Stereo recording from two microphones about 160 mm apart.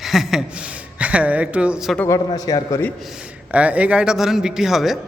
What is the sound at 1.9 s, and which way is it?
Speech, 20° left (ahead or behind).